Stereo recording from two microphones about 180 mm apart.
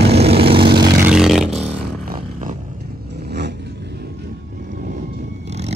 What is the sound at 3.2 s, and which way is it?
Vehicle, 70° right (ahead or behind).